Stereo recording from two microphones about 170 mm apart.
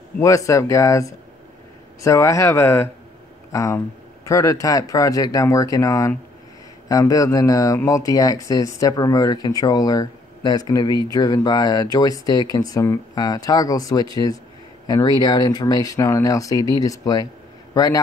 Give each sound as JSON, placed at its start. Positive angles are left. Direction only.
{"t": 0.2, "sound": "speech", "side_deg": 20}